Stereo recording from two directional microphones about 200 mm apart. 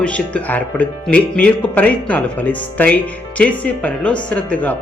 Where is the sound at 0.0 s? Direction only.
5° left (ahead or behind).